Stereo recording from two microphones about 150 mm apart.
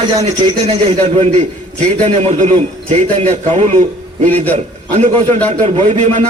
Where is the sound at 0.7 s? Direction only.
45° right (ahead or behind).